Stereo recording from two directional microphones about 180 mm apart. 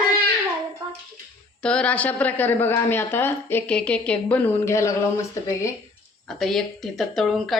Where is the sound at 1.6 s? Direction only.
5° left (ahead or behind).